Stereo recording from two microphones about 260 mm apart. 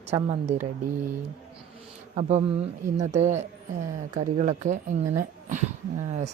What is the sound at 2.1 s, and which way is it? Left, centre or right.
Speech, right.